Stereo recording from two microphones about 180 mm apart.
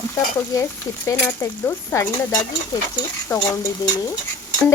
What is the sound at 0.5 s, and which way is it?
Speech, 20° left (ahead or behind).